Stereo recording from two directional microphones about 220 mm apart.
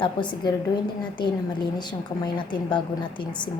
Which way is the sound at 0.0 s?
20° left (ahead or behind).